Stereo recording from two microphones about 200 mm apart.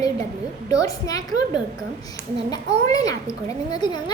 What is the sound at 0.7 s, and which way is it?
Speech, 20° left (ahead or behind).